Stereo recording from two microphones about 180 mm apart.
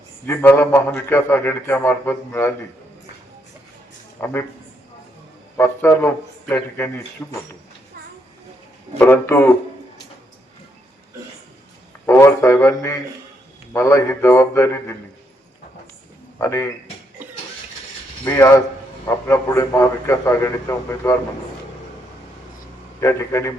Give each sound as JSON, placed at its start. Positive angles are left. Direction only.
{"t": 0.3, "sound": "a man's voice", "side_deg": 15}
{"t": 4.2, "sound": "a man's voice", "side_deg": 10}
{"t": 5.5, "sound": "a man's voice", "side_deg": 15}
{"t": 9.0, "sound": "a man's voice", "side_deg": 15}
{"t": 12.0, "sound": "music", "side_deg": 15}
{"t": 13.7, "sound": "a man's voice", "side_deg": 15}
{"t": 16.4, "sound": "a man's voice", "side_deg": 15}
{"t": 18.3, "sound": "a man's voice", "side_deg": 15}
{"t": 23.0, "sound": "a man's voice", "side_deg": 15}